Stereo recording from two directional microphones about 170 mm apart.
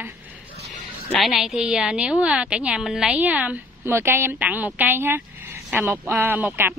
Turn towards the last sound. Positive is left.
turn(degrees=-10)  # may be behind; listen again after turning